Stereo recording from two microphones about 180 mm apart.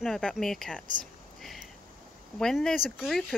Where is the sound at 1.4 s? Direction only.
Centre (ahead or behind).